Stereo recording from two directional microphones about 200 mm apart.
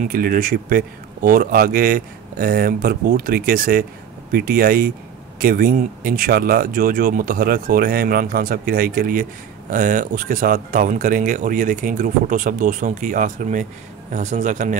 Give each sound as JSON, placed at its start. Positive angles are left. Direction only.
{"t": 0.0, "sound": "speech", "side_deg": -45}